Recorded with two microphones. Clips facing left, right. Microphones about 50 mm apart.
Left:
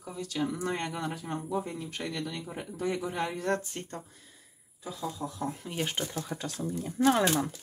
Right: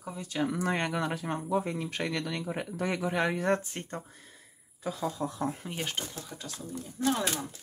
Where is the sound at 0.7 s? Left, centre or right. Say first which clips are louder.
Right 3 dB; right.